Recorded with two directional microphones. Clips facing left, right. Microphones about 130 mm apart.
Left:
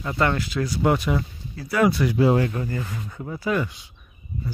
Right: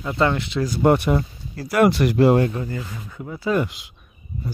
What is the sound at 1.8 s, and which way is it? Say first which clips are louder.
Speech: right 3 dB; 75° right (ahead or behind).